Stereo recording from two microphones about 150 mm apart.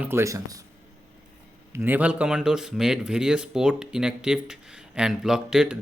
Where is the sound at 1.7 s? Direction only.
15° right (ahead or behind).